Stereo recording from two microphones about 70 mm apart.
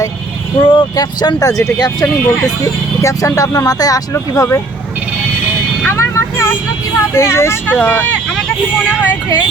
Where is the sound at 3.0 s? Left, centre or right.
Left.